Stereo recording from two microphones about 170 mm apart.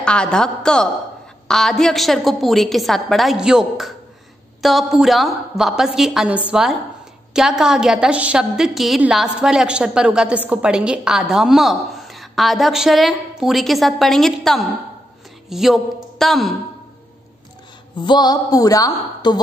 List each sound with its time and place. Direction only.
0.0 s a woman's voice: 5° left (ahead or behind)
17.9 s a woman's voice: 25° left (ahead or behind)